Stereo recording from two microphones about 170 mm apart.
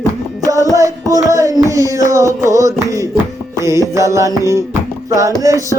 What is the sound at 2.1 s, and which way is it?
Music, 15° right (ahead or behind).